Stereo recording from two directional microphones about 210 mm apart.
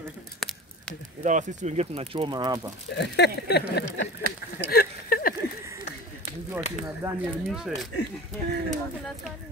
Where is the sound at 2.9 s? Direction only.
55° left (ahead or behind).